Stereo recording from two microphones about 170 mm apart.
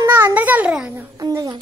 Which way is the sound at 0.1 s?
10° right (ahead or behind).